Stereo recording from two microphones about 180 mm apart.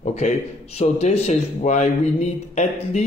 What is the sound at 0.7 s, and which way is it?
Speech, 35° left (ahead or behind).